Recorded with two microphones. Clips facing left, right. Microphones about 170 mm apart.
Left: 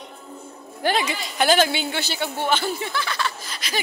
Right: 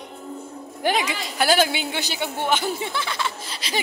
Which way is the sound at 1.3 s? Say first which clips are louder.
Left 1 dB; 5° right (ahead or behind).